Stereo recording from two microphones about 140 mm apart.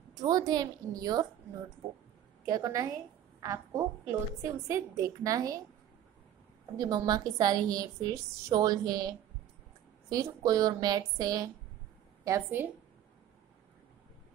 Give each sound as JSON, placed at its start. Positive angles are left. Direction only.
{"t": 0.1, "sound": "a woman's voice", "side_deg": -25}
{"t": 2.4, "sound": "a woman's voice", "side_deg": -25}
{"t": 6.8, "sound": "a woman's voice", "side_deg": -30}